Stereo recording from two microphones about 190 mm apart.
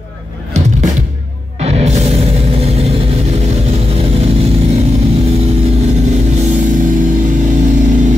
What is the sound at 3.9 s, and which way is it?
Vehicle, 30° right (ahead or behind).